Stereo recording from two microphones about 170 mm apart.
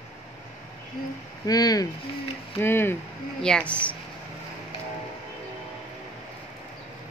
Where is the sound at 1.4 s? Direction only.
20° left (ahead or behind).